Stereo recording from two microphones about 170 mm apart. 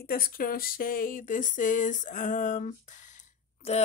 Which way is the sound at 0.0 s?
60° left (ahead or behind).